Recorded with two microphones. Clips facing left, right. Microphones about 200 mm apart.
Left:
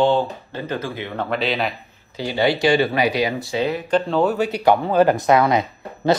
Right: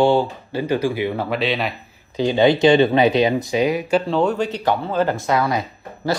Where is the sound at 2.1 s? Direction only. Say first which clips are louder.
Right 5 dB; 20° right (ahead or behind).